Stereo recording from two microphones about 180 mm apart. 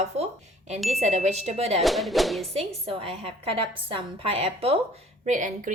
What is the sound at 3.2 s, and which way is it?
A woman's voice, 30° right (ahead or behind).